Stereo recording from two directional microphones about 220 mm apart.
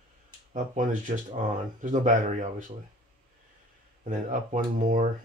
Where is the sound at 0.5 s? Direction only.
35° right (ahead or behind).